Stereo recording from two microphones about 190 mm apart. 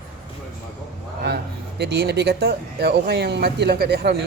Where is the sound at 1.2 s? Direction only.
60° right (ahead or behind).